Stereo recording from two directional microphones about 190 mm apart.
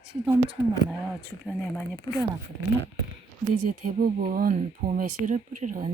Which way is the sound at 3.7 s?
45° right (ahead or behind).